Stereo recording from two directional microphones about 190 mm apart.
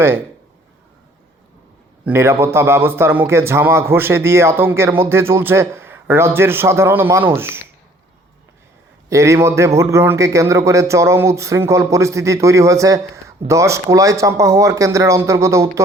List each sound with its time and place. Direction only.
2.0 s a man's voice: 15° right (ahead or behind)
9.0 s a man's voice: 15° right (ahead or behind)